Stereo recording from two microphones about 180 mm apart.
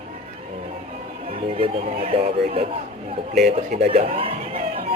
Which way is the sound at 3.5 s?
45° right (ahead or behind).